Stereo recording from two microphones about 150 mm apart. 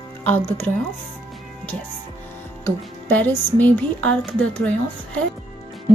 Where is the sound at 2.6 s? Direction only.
10° left (ahead or behind).